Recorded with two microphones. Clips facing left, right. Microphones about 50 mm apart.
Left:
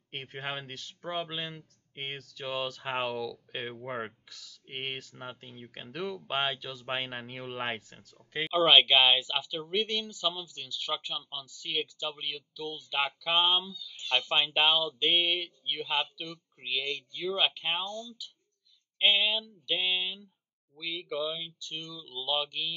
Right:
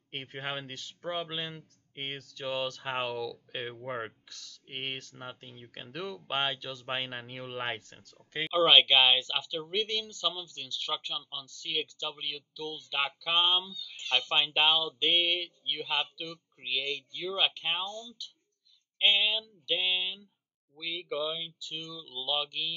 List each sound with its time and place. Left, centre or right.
0.1 s speech: centre
13.8 s speech: right
14.1 s speech: centre